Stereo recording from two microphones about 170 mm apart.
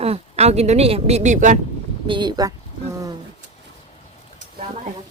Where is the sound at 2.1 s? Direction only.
25° right (ahead or behind).